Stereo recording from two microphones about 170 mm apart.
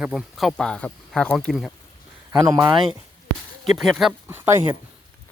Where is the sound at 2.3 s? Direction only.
20° right (ahead or behind).